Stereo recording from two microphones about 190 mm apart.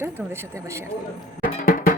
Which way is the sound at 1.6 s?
45° left (ahead or behind).